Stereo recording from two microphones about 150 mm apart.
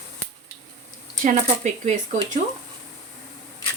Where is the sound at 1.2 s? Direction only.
55° right (ahead or behind).